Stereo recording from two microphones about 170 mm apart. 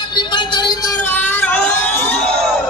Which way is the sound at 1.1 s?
10° left (ahead or behind).